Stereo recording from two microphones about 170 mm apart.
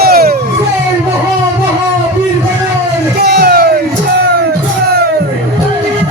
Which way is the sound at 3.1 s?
70° right (ahead or behind).